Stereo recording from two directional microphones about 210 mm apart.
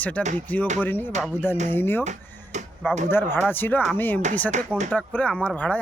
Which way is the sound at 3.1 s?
10° left (ahead or behind).